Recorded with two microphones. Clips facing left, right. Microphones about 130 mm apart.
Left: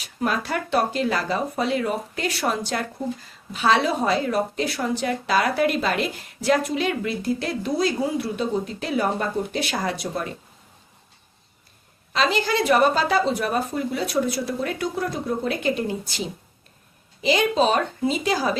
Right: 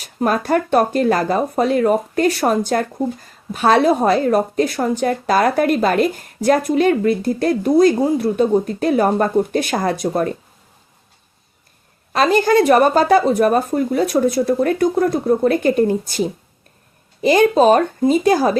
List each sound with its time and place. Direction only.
0.0 s a woman's voice: 45° right (ahead or behind)
12.1 s a woman's voice: 50° right (ahead or behind)